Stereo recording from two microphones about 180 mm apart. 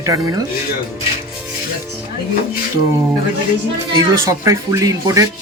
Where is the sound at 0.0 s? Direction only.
20° right (ahead or behind).